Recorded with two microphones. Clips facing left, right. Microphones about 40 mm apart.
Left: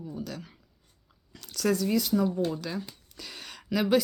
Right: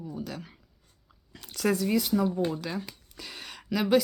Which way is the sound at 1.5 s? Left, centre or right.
Centre.